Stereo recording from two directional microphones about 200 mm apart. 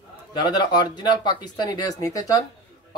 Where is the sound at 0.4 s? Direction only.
20° left (ahead or behind).